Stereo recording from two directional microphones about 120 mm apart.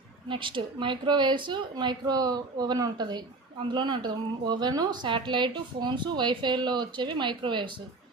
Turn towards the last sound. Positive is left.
turn(degrees=-40)  # may be behind; listen again after turning